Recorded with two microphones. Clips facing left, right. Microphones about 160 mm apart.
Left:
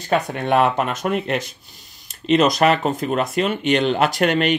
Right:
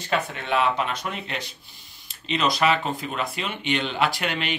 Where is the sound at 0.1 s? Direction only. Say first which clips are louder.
Left 6 dB; 45° left (ahead or behind).